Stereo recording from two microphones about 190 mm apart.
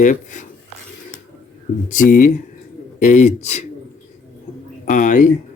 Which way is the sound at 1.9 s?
40° left (ahead or behind).